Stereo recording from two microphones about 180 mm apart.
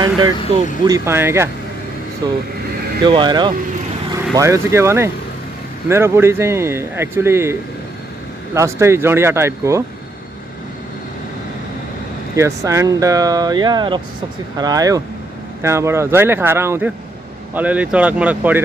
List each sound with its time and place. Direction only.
0.5 s speech: 30° right (ahead or behind)
0.8 s speech: 15° right (ahead or behind)
8.5 s speech: 15° right (ahead or behind)
12.4 s speech: 15° right (ahead or behind)